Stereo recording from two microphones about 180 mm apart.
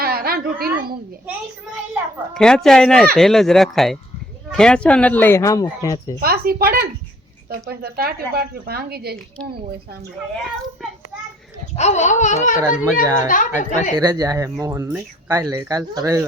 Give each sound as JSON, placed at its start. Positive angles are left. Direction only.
{"t": 0.0, "sound": "a sound", "side_deg": -55}
{"t": 2.3, "sound": "speech", "side_deg": 5}
{"t": 6.1, "sound": "speech", "side_deg": -60}
{"t": 11.8, "sound": "a sound", "side_deg": 40}
{"t": 12.8, "sound": "a child's voice", "side_deg": -15}
{"t": 13.2, "sound": "a woman's voice", "side_deg": 45}
{"t": 14.0, "sound": "speech", "side_deg": -20}